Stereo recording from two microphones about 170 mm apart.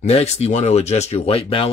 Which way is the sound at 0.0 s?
40° left (ahead or behind).